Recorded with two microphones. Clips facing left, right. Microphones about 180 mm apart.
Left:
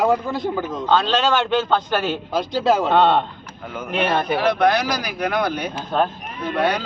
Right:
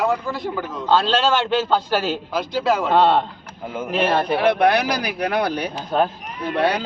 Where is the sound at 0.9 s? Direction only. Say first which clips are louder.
Right 1 dB; 5° right (ahead or behind).